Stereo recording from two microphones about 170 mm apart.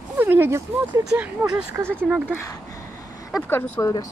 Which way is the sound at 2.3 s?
20° left (ahead or behind).